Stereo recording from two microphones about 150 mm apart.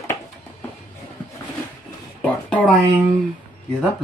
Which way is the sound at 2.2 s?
10° left (ahead or behind).